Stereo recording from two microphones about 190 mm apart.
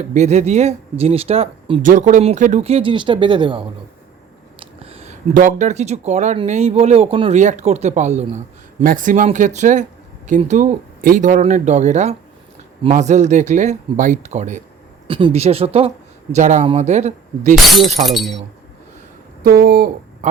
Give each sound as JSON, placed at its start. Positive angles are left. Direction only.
{"t": 0.0, "sound": "speech", "side_deg": -35}
{"t": 1.8, "sound": "speech", "side_deg": -45}
{"t": 15.0, "sound": "speech", "side_deg": -30}
{"t": 18.0, "sound": "speech", "side_deg": 0}
{"t": 19.4, "sound": "speech", "side_deg": -55}